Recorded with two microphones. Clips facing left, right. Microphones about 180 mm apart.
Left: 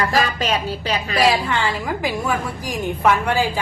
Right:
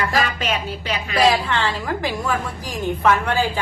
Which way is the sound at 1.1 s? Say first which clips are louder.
Right 1 dB; 10° left (ahead or behind).